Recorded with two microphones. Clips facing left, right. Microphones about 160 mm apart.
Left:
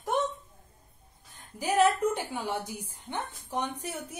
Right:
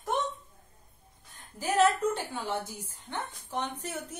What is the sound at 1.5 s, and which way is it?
A woman's voice, 15° left (ahead or behind).